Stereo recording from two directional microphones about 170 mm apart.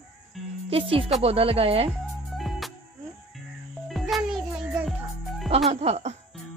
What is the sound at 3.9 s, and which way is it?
Music, centre (ahead or behind).